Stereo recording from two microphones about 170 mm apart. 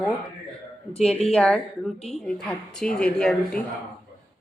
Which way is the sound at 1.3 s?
5° left (ahead or behind).